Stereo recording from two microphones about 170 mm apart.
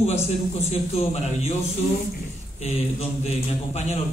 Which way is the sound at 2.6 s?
40° left (ahead or behind).